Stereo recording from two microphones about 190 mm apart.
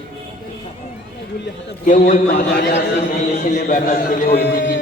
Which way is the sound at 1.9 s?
45° left (ahead or behind).